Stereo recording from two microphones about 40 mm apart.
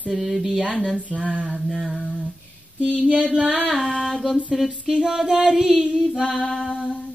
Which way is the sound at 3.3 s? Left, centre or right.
Centre.